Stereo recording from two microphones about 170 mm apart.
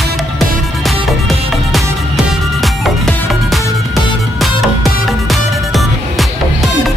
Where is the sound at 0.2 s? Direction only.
Centre (ahead or behind).